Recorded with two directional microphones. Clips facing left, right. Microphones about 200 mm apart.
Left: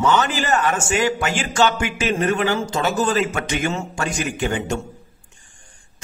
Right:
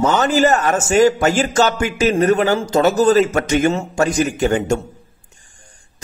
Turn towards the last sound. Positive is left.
turn(degrees=-40)  # may be behind; listen again after turning